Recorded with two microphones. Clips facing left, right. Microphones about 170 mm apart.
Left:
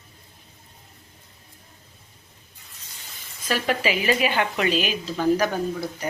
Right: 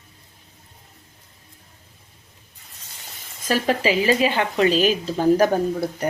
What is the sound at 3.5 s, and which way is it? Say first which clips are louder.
Speech: right 4 dB; 30° right (ahead or behind).